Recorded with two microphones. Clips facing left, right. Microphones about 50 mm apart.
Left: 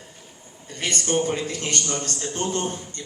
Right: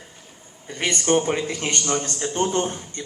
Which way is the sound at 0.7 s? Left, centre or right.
Right.